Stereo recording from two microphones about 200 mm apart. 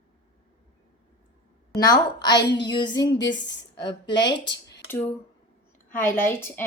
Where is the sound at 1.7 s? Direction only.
20° left (ahead or behind).